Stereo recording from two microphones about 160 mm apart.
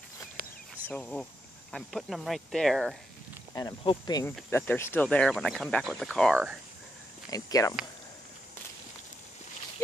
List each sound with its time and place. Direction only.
0.8 s speech: 5° left (ahead or behind)
3.5 s speech: 30° left (ahead or behind)
4.5 s speech: 15° left (ahead or behind)
7.2 s speech: 25° left (ahead or behind)